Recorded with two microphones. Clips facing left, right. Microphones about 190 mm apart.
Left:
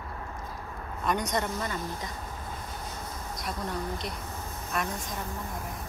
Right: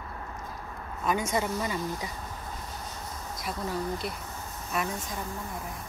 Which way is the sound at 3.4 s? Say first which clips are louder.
Right 2 dB; 5° right (ahead or behind).